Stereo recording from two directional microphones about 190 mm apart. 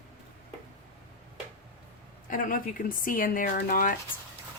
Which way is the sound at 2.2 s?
45° left (ahead or behind).